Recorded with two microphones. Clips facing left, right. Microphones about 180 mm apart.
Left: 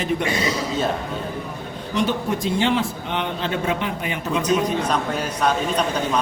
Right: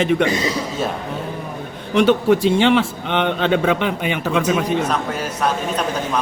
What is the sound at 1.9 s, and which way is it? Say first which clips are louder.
A man's voice: right 8 dB; 70° right (ahead or behind).